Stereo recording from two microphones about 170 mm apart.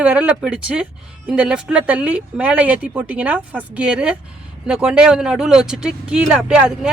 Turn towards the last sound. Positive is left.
turn(degrees=-5)  # may be behind; listen again after turning